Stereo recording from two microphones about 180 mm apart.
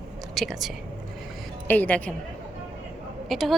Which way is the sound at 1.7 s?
10° left (ahead or behind).